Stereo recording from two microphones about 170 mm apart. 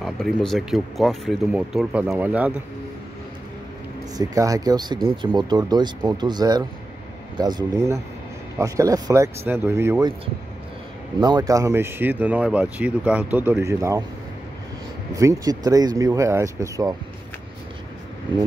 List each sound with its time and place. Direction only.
0.0 s speech: centre (ahead or behind)
4.2 s speech: 20° right (ahead or behind)
11.1 s speech: 25° right (ahead or behind)
15.1 s speech: 20° right (ahead or behind)